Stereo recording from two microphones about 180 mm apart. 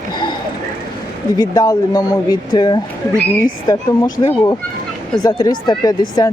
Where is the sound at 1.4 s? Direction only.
20° left (ahead or behind).